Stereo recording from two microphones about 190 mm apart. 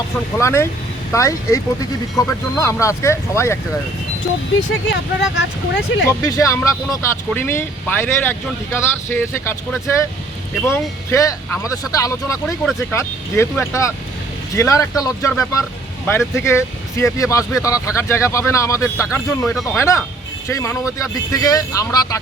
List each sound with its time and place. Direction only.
0.3 s speech: 15° left (ahead or behind)
5.4 s speech: 70° left (ahead or behind)
6.1 s speech: 15° left (ahead or behind)